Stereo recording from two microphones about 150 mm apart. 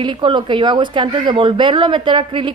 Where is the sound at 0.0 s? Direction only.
30° right (ahead or behind).